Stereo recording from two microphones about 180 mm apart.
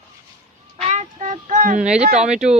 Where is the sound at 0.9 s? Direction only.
40° right (ahead or behind).